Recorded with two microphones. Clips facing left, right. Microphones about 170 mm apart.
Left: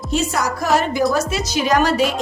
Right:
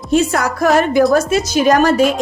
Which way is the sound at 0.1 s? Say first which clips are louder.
Right 6 dB; 55° right (ahead or behind).